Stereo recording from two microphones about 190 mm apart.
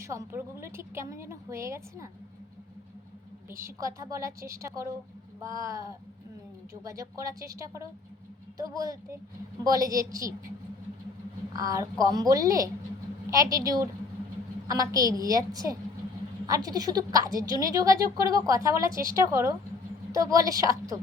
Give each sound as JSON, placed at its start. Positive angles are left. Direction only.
{"t": 0.0, "sound": "a woman's voice", "side_deg": -15}
{"t": 3.5, "sound": "a woman's voice", "side_deg": -15}
{"t": 11.5, "sound": "a woman's voice", "side_deg": -20}